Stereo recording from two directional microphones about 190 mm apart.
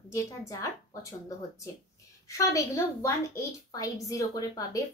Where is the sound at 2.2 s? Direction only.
15° left (ahead or behind).